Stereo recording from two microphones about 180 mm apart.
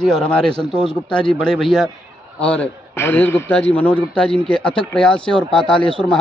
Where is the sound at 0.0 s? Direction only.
5° left (ahead or behind).